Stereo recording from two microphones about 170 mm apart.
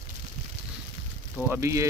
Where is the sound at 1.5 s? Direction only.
15° right (ahead or behind).